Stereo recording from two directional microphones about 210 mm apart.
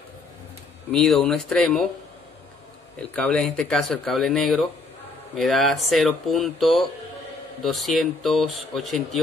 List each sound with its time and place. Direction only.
0.9 s speech: centre (ahead or behind)
3.0 s speech: 5° left (ahead or behind)